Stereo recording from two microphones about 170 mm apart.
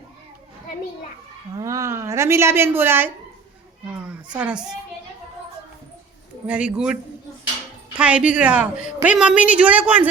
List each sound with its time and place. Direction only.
1.5 s a woman's voice: 20° right (ahead or behind)
4.1 s a woman's voice: 5° right (ahead or behind)
6.5 s a woman's voice: 5° right (ahead or behind)
7.9 s a woman's voice: 5° right (ahead or behind)